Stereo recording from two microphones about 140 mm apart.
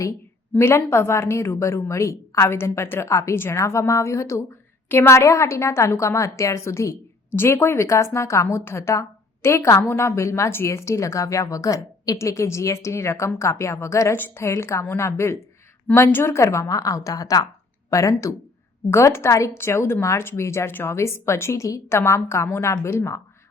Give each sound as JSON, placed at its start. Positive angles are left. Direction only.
{"t": 0.5, "sound": "a woman's voice", "side_deg": 20}